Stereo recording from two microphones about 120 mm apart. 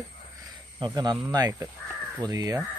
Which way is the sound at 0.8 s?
35° right (ahead or behind).